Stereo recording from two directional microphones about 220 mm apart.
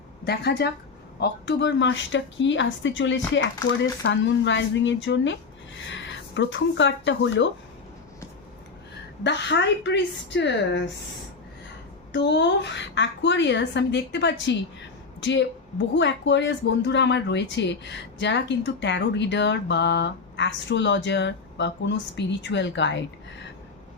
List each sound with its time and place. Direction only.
0.3 s speech: 50° left (ahead or behind)
9.2 s speech: 50° left (ahead or behind)
12.1 s speech: 55° left (ahead or behind)